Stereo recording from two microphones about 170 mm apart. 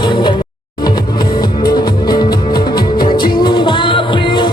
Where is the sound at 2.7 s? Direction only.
60° left (ahead or behind).